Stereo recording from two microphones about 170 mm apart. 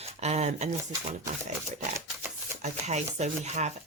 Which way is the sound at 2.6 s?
40° right (ahead or behind).